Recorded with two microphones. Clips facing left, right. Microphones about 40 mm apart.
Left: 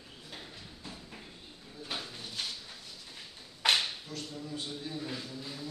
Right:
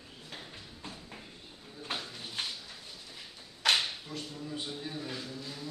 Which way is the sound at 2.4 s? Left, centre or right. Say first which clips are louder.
Right 1 dB; right.